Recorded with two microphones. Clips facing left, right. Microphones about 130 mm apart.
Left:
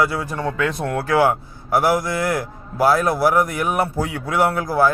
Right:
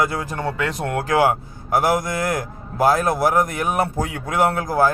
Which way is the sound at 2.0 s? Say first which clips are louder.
Left 1 dB; 45° right (ahead or behind).